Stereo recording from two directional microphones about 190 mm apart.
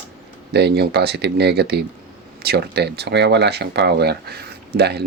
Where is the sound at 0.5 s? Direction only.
60° right (ahead or behind).